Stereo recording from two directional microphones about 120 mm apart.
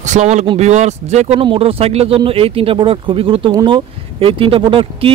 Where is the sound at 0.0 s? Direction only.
75° right (ahead or behind).